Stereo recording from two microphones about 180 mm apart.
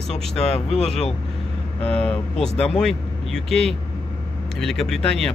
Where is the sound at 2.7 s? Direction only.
Centre (ahead or behind).